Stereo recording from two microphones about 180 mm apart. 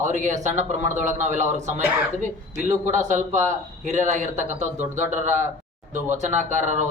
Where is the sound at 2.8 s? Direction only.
45° right (ahead or behind).